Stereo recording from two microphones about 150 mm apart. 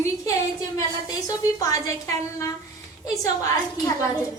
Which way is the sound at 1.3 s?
20° left (ahead or behind).